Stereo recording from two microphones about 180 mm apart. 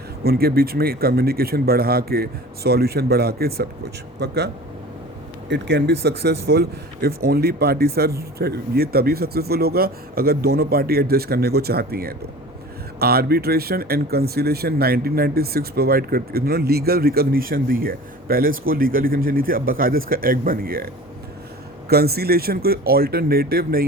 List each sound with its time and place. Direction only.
0.3 s a man's voice: 60° right (ahead or behind)
5.5 s speech: 80° right; by 23.8 s 55° right (ahead or behind)